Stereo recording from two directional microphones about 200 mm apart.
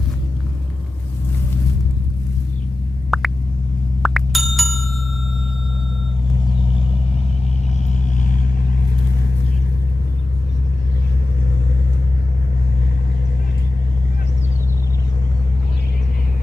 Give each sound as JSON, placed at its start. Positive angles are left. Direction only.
{"t": 3.1, "sound": "plop", "side_deg": 0}
{"t": 4.0, "sound": "bicycle bell", "side_deg": 0}
{"t": 7.9, "sound": "vehicle", "side_deg": 40}